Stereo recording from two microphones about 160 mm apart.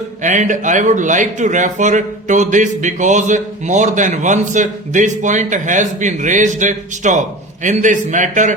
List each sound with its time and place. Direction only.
0.2 s a man's voice: 50° right (ahead or behind)